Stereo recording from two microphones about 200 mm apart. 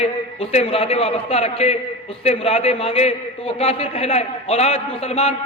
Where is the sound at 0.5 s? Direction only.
30° left (ahead or behind).